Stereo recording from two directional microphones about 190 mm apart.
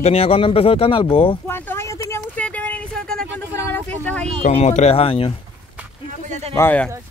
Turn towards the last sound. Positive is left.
turn(degrees=10)  # may be behind; listen again after turning